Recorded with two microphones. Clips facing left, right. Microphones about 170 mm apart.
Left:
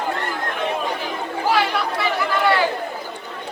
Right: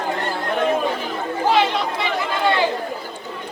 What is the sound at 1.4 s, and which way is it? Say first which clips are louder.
Chatter: right 2 dB; 20° right (ahead or behind).